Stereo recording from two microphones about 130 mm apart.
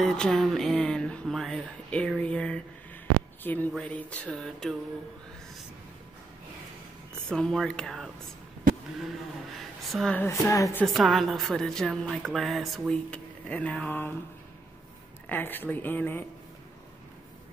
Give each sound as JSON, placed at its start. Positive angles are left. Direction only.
{"t": 0.0, "sound": "speech", "side_deg": 5}
{"t": 7.2, "sound": "speech", "side_deg": 5}
{"t": 9.6, "sound": "a sound", "side_deg": 0}
{"t": 10.1, "sound": "speech", "side_deg": 20}
{"t": 10.8, "sound": "speech", "side_deg": 0}
{"t": 15.2, "sound": "speech", "side_deg": 15}